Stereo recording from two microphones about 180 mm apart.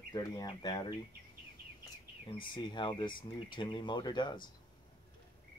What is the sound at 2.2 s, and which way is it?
Speech, 30° left (ahead or behind).